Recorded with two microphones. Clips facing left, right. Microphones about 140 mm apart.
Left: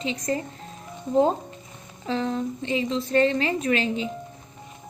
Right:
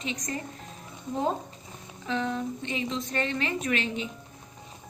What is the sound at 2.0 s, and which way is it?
A woman's voice, 35° left (ahead or behind).